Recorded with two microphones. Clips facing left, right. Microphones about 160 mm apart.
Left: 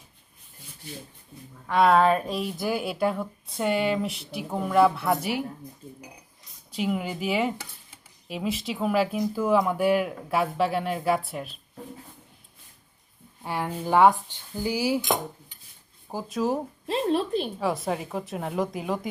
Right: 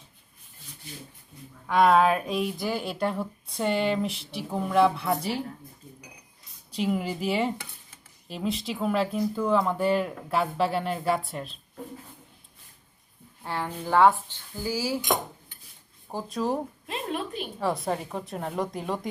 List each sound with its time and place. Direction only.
1.6 s speech: centre (ahead or behind)
6.7 s speech: centre (ahead or behind)
13.4 s dishes: 15° left (ahead or behind)
16.0 s speech: centre (ahead or behind)
16.8 s a woman's voice: 30° left (ahead or behind)
17.6 s speech: centre (ahead or behind)